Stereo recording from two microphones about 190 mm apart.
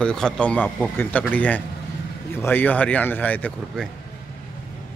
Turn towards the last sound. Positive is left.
turn(degrees=5)  # may be behind; listen again after turning